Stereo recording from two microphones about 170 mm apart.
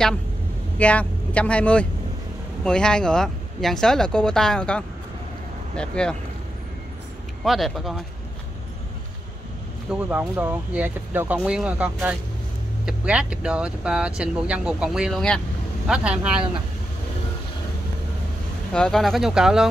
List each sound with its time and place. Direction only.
0.7 s speech: 10° left (ahead or behind)
7.4 s speech: centre (ahead or behind)
9.8 s speech: 10° right (ahead or behind)
18.7 s speech: 5° left (ahead or behind)